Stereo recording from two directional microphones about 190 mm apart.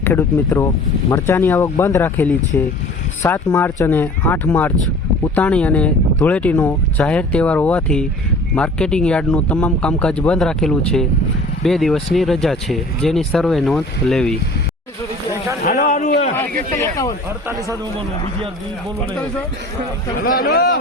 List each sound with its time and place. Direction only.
0.0 s speech: 10° left (ahead or behind)
15.7 s a man's voice: 35° left (ahead or behind)
20.2 s speech: 50° left (ahead or behind)